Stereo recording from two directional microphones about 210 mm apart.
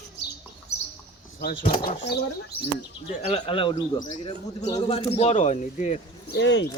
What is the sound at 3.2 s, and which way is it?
Speech, 25° left (ahead or behind).